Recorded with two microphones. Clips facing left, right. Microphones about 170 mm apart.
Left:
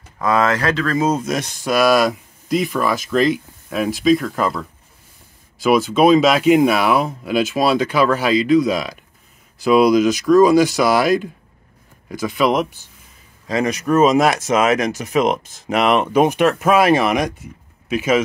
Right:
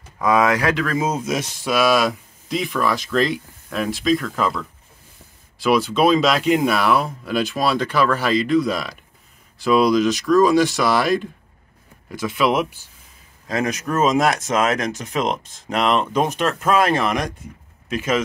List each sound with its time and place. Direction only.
0.2 s speech: 10° right (ahead or behind); by 18.2 s 5° left (ahead or behind)